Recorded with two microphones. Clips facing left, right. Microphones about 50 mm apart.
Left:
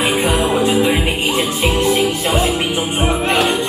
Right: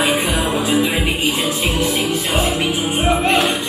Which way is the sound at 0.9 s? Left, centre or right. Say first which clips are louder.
Left 1 dB; left.